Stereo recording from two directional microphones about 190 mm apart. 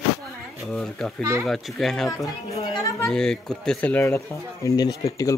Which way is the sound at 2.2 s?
20° left (ahead or behind).